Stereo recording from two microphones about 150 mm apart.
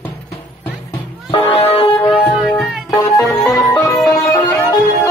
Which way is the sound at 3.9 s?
Centre (ahead or behind).